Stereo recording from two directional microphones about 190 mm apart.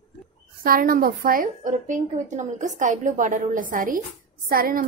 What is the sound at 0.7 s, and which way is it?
A woman's voice, 50° right (ahead or behind).